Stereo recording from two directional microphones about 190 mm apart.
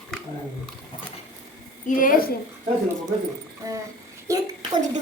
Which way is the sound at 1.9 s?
45° left (ahead or behind).